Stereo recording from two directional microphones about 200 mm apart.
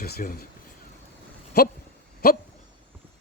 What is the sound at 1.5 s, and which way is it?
Speech, 55° left (ahead or behind).